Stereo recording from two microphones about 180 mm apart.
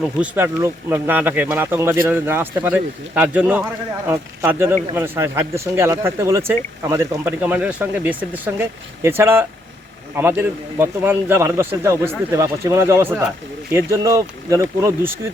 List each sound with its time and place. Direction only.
0.0 s speech: 10° right (ahead or behind)